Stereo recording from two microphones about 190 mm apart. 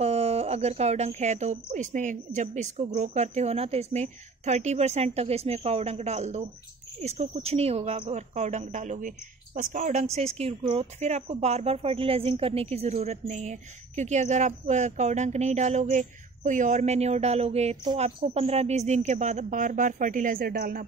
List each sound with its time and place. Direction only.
0.0 s speech: 30° right (ahead or behind); by 20.8 s 50° right (ahead or behind)